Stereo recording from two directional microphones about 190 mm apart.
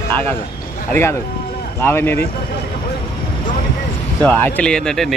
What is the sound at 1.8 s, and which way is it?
Speech, 10° left (ahead or behind).